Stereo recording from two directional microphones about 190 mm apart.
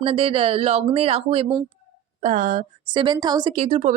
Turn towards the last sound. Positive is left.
turn(degrees=-35)  # may be behind; listen again after turning